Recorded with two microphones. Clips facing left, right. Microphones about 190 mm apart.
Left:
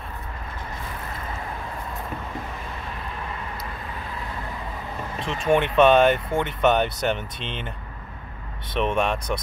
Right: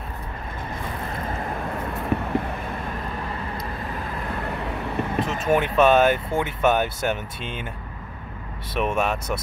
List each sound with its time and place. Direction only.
2.1 s vehicle: 70° right (ahead or behind)
4.3 s vehicle: 65° right (ahead or behind)
5.2 s speech: 5° right (ahead or behind)
8.7 s speech: 5° right (ahead or behind)